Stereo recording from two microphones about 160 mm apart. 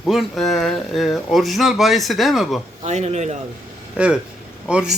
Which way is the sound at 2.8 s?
45° right (ahead or behind).